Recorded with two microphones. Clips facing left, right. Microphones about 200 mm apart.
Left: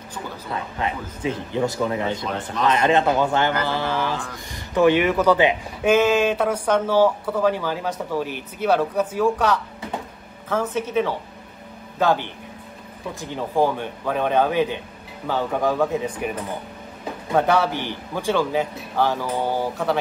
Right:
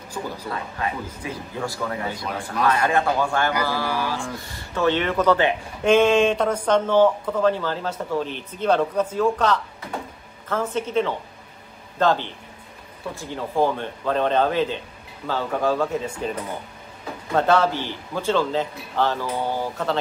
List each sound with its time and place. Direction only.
0.8 s speech: 25° left (ahead or behind)
10.7 s speech: 10° left (ahead or behind)